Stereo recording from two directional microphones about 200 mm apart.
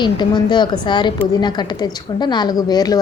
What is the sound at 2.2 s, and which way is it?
Speech, 20° left (ahead or behind).